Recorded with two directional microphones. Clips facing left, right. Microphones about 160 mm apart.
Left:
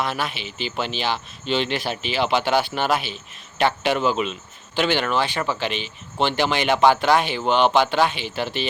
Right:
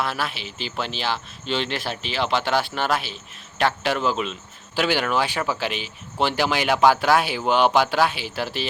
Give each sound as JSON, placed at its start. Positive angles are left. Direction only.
{"t": 0.0, "sound": "speech", "side_deg": 0}